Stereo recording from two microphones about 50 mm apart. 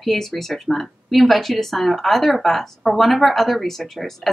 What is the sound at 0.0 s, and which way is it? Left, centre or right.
Speech, centre.